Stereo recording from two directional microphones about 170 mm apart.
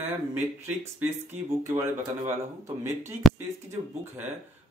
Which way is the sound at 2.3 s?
15° right (ahead or behind).